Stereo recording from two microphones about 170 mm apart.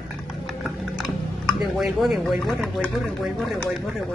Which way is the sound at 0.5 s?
Centre (ahead or behind).